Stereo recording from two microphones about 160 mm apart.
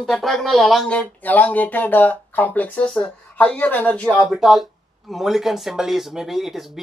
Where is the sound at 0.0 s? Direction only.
Centre (ahead or behind).